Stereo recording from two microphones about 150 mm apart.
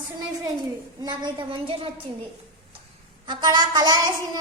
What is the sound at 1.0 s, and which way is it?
Speech, 30° right (ahead or behind).